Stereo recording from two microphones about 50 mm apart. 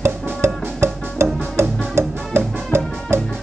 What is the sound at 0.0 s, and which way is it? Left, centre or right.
Music, right.